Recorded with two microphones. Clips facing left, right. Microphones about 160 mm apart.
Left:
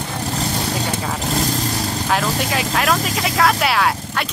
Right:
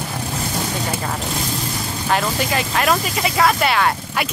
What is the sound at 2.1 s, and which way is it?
Speech, centre (ahead or behind).